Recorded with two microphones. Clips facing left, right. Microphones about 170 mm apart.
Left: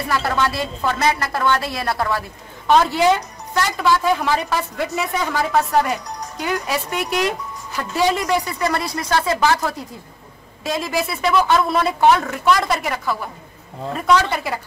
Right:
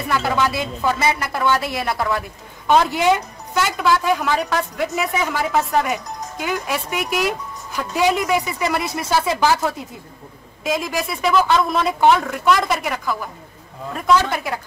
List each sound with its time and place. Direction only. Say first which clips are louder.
0.1 s speech: right 1 dB; 5° right (ahead or behind)
8.8 s speech: right 1 dB; 25° right (ahead or behind)
9.1 s speech: even; 5° right (ahead or behind)
10.7 s speech: even; centre (ahead or behind)